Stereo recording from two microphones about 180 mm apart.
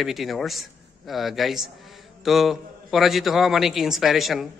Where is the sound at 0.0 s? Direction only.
Centre (ahead or behind).